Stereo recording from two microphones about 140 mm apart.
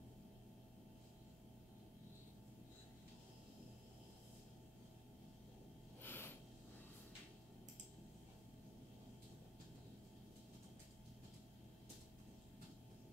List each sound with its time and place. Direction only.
6.0 s snort: 15° left (ahead or behind)